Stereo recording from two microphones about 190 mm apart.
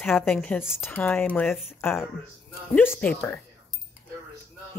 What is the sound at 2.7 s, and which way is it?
Speech, 10° left (ahead or behind).